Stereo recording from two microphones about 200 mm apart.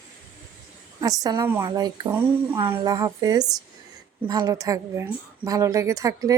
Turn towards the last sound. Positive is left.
turn(degrees=-15)  # may be behind; listen again after turning